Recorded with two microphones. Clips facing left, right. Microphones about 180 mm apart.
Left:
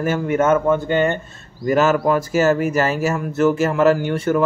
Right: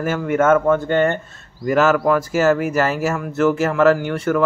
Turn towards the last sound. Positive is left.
turn(degrees=25)  # may be behind; listen again after turning